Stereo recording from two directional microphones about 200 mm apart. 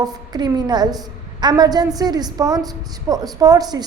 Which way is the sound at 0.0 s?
20° right (ahead or behind).